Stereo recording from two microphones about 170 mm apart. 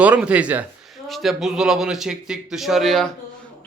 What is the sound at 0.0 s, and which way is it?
A man's voice, 5° right (ahead or behind).